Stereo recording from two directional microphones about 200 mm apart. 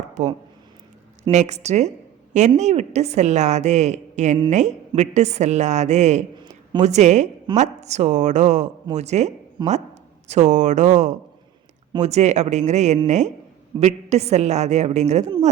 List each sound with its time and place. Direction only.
1.3 s a woman's voice: 35° right (ahead or behind)
9.6 s speech: 20° right (ahead or behind)
10.2 s a woman's voice: 35° right (ahead or behind)